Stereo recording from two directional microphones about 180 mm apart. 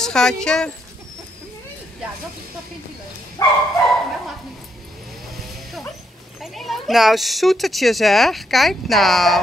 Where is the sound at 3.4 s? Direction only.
20° left (ahead or behind).